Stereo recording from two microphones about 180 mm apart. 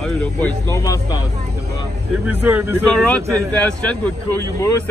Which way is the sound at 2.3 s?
10° right (ahead or behind).